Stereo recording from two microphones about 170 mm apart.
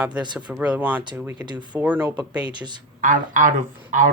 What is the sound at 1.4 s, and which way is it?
Speech, 25° right (ahead or behind).